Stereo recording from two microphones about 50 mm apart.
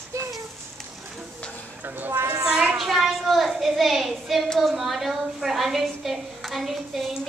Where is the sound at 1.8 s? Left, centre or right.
Right.